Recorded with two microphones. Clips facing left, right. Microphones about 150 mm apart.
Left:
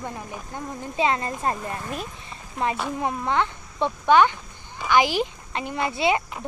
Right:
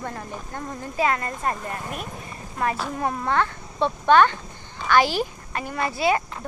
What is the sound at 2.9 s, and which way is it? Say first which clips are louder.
Speech: right 2 dB; 15° left (ahead or behind).